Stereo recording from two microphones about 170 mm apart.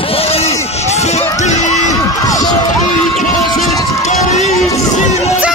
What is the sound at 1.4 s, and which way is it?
Crowd, 45° left (ahead or behind).